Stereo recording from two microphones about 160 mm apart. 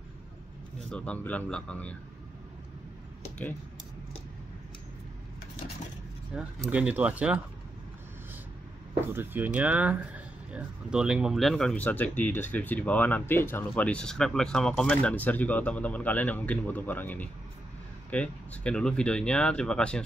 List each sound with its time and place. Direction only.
0.8 s speech: 5° left (ahead or behind)
6.3 s speech: 5° right (ahead or behind)
9.0 s speech: 15° right (ahead or behind); by 20.0 s 5° left (ahead or behind)